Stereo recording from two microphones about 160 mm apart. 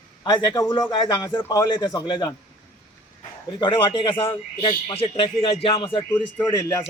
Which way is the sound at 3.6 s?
30° left (ahead or behind).